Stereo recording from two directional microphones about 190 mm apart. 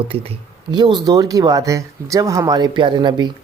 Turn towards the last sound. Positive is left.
turn(degrees=-25)  # may be behind; listen again after turning